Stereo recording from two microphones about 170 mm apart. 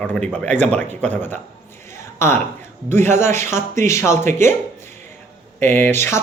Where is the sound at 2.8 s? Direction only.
15° left (ahead or behind).